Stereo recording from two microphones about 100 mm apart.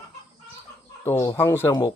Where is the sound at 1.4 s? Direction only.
20° left (ahead or behind).